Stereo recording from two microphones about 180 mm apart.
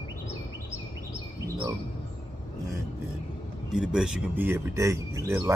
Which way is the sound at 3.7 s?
5° right (ahead or behind).